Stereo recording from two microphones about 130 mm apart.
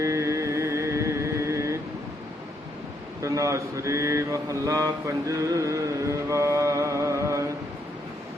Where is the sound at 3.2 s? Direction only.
25° right (ahead or behind).